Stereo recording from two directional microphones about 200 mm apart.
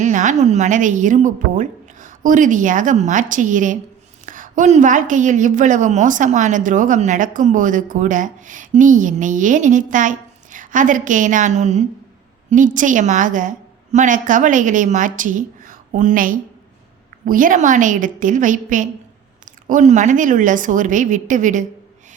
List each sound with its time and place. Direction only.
0.0 s a woman's voice: 40° right (ahead or behind)